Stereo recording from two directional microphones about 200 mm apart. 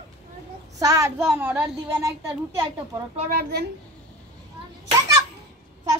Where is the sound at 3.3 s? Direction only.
55° right (ahead or behind).